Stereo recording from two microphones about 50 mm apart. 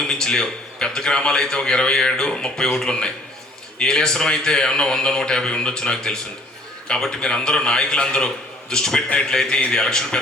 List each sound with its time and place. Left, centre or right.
0.0 s a man's voice: centre